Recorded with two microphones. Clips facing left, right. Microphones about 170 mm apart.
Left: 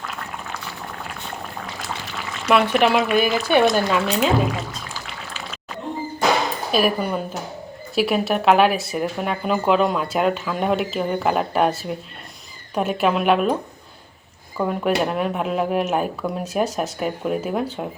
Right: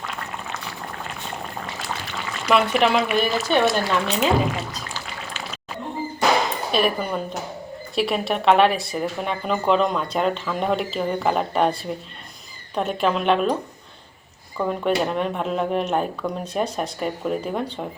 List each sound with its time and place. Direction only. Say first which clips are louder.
0.0 s boiling: even; centre (ahead or behind)
2.5 s speech: left 2 dB; centre (ahead or behind)
6.7 s speech: left 4 dB; 5° left (ahead or behind)
14.6 s speech: left 1 dB; 5° left (ahead or behind)